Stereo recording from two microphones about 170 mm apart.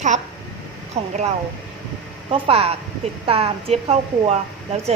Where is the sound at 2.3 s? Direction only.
35° right (ahead or behind).